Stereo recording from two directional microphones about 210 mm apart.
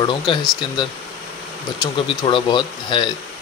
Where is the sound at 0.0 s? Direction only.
20° left (ahead or behind).